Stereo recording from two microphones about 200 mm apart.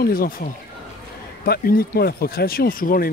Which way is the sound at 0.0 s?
45° left (ahead or behind).